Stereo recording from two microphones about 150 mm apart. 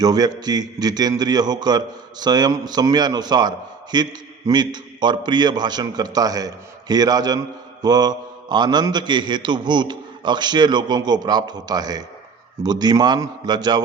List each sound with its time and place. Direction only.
0.0 s a man's voice: 25° right (ahead or behind)